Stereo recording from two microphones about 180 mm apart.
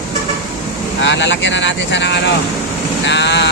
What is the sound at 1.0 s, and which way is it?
Speech, 80° left.